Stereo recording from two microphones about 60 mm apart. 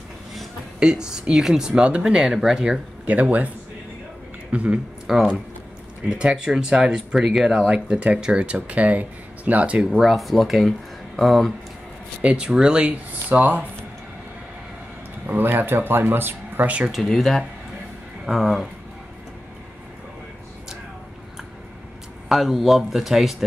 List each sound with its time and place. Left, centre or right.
0.7 s speech: centre
5.0 s speech: centre
7.6 s speech: centre
9.8 s speech: centre
12.2 s speech: centre
15.2 s speech: right
16.9 s speech: centre
22.3 s speech: centre